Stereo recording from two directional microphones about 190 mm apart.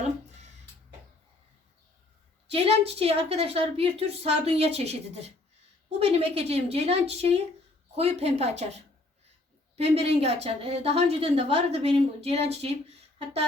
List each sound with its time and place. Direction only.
2.5 s a woman's voice: 30° right (ahead or behind)
9.7 s a woman's voice: 35° right (ahead or behind)